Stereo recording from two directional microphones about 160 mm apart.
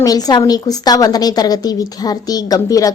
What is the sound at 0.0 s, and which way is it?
A woman's voice, 25° left (ahead or behind).